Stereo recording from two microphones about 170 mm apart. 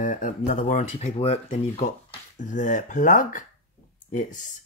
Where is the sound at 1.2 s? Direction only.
35° left (ahead or behind).